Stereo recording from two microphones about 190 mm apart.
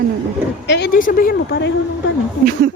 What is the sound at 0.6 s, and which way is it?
A woman's voice, 65° left (ahead or behind).